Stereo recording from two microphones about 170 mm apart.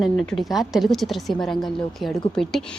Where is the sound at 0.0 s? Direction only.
Centre (ahead or behind).